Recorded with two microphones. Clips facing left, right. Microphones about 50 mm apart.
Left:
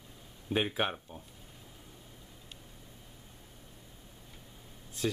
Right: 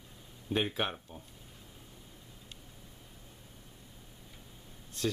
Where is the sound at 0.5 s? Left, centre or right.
Centre.